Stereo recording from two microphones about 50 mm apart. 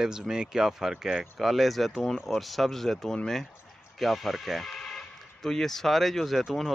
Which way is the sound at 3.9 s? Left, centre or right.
Centre.